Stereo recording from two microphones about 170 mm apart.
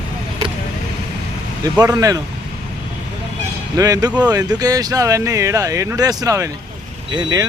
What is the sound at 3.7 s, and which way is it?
Speech, 20° right (ahead or behind).